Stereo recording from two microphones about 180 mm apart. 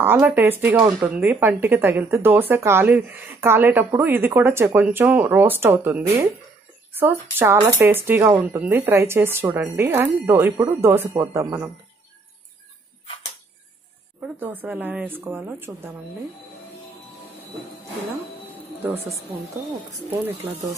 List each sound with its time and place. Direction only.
0.0 s speech: 10° right (ahead or behind)
14.2 s speech: 10° right (ahead or behind)